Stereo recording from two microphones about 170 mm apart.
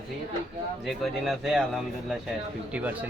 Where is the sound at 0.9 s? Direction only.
Centre (ahead or behind).